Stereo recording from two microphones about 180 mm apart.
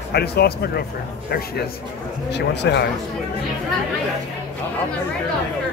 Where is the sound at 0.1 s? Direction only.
65° left (ahead or behind).